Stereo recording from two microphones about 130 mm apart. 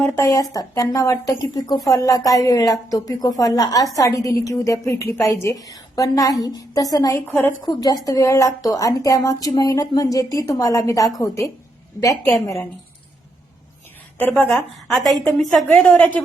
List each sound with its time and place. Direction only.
0.2 s a woman's voice: 25° left (ahead or behind)
7.3 s a woman's voice: 15° left (ahead or behind)
7.6 s a woman's voice: 30° left (ahead or behind)
14.2 s a woman's voice: 10° left (ahead or behind)